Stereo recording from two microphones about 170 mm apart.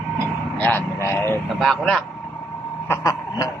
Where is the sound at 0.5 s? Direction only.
10° left (ahead or behind).